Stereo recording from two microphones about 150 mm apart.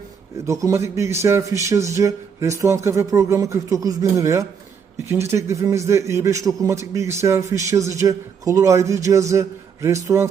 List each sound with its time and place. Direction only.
0.4 s a man's voice: 20° right (ahead or behind)